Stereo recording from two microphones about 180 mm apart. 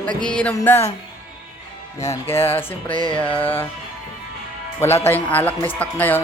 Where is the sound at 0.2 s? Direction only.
5° left (ahead or behind).